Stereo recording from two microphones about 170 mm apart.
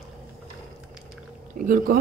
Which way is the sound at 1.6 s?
55° right (ahead or behind).